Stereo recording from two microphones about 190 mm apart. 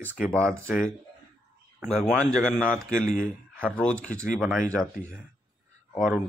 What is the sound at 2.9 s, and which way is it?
Speech, 40° left (ahead or behind).